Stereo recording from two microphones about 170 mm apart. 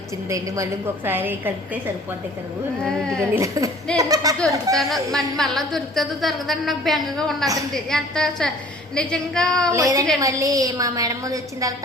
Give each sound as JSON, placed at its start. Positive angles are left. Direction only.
{"t": 0.3, "sound": "a woman's voice", "side_deg": -20}
{"t": 2.8, "sound": "a woman's voice", "side_deg": 5}
{"t": 3.3, "sound": "a woman's voice", "side_deg": -20}
{"t": 5.1, "sound": "a woman's voice", "side_deg": 0}
{"t": 9.7, "sound": "a woman's voice", "side_deg": -20}